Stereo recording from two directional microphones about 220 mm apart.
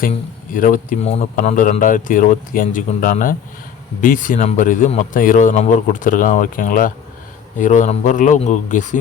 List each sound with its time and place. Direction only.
0.5 s speech: 40° left (ahead or behind)